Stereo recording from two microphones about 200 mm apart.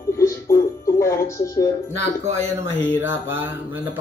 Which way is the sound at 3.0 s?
10° right (ahead or behind).